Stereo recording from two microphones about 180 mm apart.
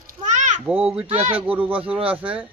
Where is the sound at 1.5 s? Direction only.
30° right (ahead or behind).